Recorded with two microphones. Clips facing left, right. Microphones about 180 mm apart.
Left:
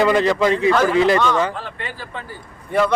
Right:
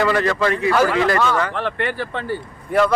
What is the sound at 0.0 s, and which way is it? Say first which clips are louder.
Speech: left 2 dB; 20° left (ahead or behind).